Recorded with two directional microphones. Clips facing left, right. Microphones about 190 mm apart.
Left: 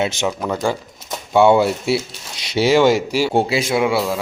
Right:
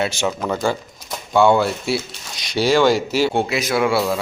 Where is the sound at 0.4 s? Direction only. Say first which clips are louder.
Even; 5° left (ahead or behind).